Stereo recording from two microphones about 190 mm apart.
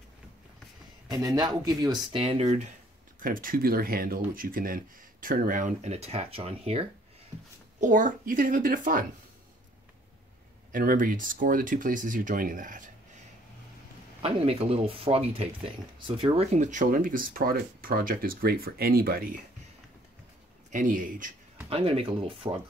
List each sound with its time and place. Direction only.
1.1 s speech: 20° right (ahead or behind)
3.2 s speech: 45° right (ahead or behind); by 6.9 s 30° right (ahead or behind)
7.8 s speech: 45° right (ahead or behind)
10.7 s speech: 45° right (ahead or behind)
14.2 s speech: 30° right (ahead or behind)
16.5 s speech: 40° right (ahead or behind)
20.7 s speech: 45° right (ahead or behind)
21.6 s speech: 30° right (ahead or behind)